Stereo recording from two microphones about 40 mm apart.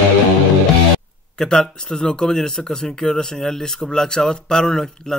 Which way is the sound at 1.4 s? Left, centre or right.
Centre.